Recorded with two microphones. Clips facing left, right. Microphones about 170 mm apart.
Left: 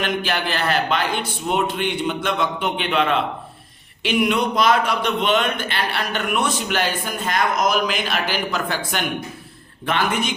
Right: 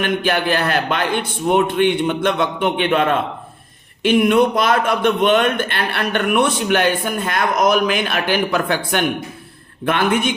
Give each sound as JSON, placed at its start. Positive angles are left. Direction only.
{"t": 0.0, "sound": "a man's voice", "side_deg": -55}